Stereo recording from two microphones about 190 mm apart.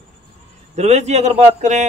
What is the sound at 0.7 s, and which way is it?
A man's voice, 35° right (ahead or behind).